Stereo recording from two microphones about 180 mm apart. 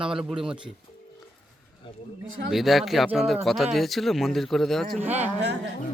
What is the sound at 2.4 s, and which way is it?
Speech, centre (ahead or behind).